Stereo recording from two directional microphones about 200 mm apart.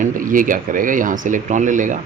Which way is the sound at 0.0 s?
40° right (ahead or behind).